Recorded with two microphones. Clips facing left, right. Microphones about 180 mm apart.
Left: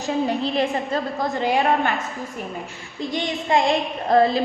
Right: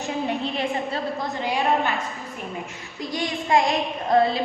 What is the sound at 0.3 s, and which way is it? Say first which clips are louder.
Speech: left 4 dB; 35° left (ahead or behind).